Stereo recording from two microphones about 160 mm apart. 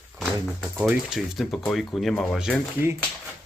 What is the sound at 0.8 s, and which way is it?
Speech, 5° right (ahead or behind).